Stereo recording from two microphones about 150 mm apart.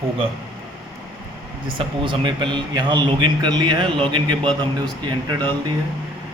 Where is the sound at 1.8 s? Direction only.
35° right (ahead or behind).